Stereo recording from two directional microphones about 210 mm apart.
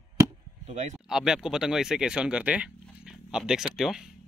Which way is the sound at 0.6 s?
35° right (ahead or behind).